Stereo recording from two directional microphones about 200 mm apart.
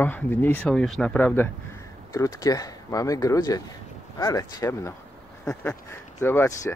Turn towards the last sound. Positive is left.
turn(degrees=10)  # may be behind; listen again after turning